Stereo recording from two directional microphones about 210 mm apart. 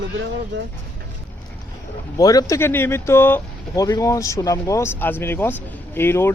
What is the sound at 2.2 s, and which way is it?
Speech, 15° left (ahead or behind).